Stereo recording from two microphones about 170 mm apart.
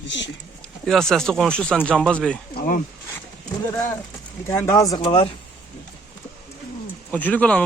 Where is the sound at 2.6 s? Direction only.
55° left (ahead or behind).